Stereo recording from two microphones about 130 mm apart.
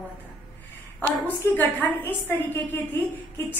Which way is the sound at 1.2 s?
15° left (ahead or behind).